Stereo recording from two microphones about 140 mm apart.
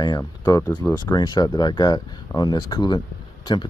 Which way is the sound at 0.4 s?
25° left (ahead or behind).